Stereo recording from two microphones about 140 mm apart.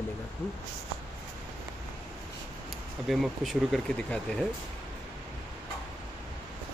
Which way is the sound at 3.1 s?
Centre (ahead or behind).